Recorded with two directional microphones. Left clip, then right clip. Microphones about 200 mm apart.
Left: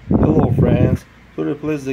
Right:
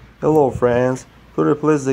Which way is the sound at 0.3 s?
25° right (ahead or behind).